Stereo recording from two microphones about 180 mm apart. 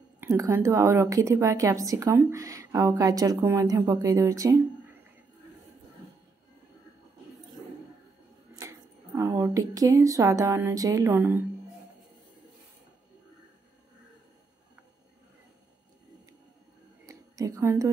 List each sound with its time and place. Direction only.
0.2 s a woman's voice: 15° right (ahead or behind)
8.5 s speech: 15° right (ahead or behind)
17.0 s a sound: 20° right (ahead or behind)